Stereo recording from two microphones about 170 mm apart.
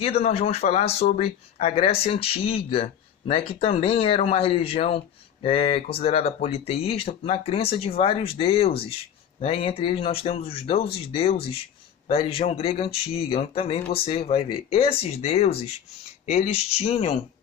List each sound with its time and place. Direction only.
0.0 s speech: 35° left (ahead or behind)